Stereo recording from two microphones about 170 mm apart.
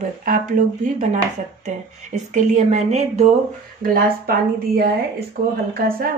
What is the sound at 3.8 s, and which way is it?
Speech, 60° right (ahead or behind).